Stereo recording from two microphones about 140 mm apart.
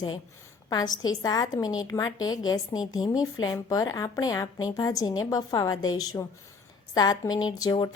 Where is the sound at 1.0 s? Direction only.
25° left (ahead or behind).